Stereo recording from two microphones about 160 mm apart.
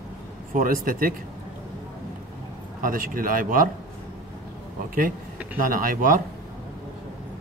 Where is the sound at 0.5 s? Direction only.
60° right (ahead or behind).